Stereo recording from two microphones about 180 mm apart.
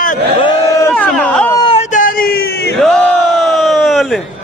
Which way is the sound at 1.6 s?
30° left (ahead or behind).